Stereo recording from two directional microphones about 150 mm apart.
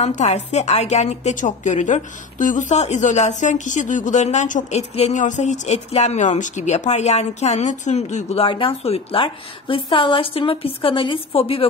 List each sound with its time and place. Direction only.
0.0 s a woman's voice: 50° left (ahead or behind)